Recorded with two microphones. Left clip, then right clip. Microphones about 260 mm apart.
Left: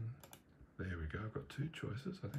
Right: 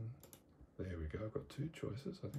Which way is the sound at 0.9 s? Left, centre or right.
Right.